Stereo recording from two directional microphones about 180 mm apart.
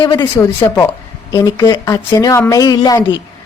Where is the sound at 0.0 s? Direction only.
20° left (ahead or behind).